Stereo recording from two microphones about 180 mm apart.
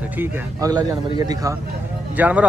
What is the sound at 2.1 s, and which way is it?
Speech, 10° right (ahead or behind).